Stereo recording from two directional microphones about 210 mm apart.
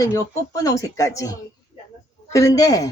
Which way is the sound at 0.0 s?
15° left (ahead or behind).